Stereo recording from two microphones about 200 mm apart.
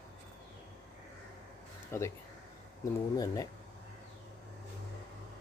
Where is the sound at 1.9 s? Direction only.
15° left (ahead or behind).